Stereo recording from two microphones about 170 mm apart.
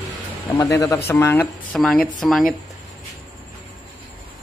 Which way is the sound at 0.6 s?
20° left (ahead or behind).